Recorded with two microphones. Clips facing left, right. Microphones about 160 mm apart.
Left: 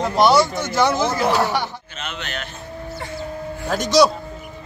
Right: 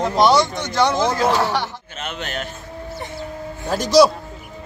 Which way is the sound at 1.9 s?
50° right (ahead or behind).